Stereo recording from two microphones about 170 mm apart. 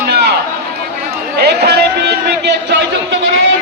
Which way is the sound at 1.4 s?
70° right (ahead or behind).